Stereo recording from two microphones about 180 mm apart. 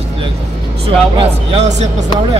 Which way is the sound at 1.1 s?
35° right (ahead or behind).